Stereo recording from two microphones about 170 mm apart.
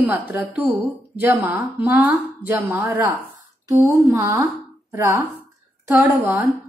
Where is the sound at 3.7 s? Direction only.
15° right (ahead or behind).